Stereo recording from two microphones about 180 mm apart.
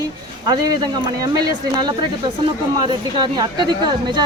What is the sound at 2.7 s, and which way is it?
Speech, 25° right (ahead or behind).